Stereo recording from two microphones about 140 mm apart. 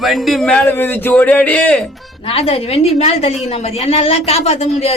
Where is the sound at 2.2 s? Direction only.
45° left (ahead or behind).